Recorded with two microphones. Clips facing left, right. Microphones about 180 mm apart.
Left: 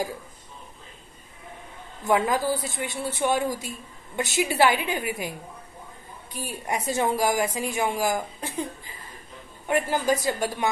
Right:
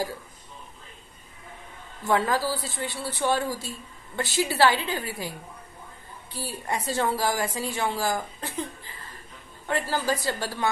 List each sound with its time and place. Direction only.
2.0 s a woman's voice: 15° left (ahead or behind)
6.3 s a woman's voice: 15° left (ahead or behind)
9.8 s a woman's voice: 20° left (ahead or behind)